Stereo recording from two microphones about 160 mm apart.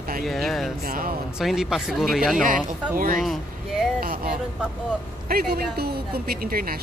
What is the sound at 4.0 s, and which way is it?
A woman's voice, 65° right (ahead or behind).